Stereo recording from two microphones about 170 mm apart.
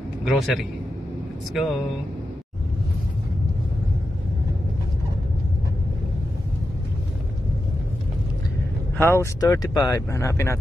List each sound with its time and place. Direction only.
0.3 s a man's voice: centre (ahead or behind)
8.9 s speech: 15° left (ahead or behind)